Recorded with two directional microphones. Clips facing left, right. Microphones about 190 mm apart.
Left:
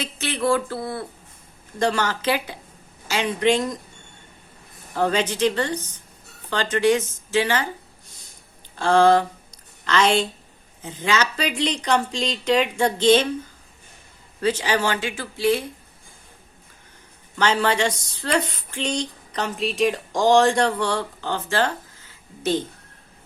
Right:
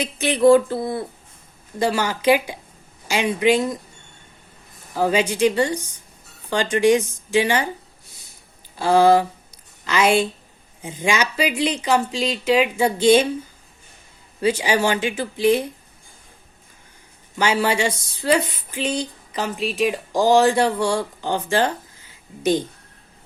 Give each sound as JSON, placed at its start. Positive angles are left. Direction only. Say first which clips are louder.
{"t": 0.0, "sound": "speech", "louder": "right 8 dB", "side_deg": -15}
{"t": 1.8, "sound": "speech", "louder": "right 2 dB", "side_deg": -10}
{"t": 4.9, "sound": "speech", "louder": "right 2 dB", "side_deg": -10}
{"t": 8.7, "sound": "a sound", "louder": "right 2 dB", "side_deg": -10}
{"t": 10.8, "sound": "speech", "louder": "right 1 dB", "side_deg": -15}
{"t": 14.4, "sound": "speech", "louder": "right 3 dB", "side_deg": -10}
{"t": 17.3, "sound": "speech", "louder": "right 1 dB", "side_deg": -10}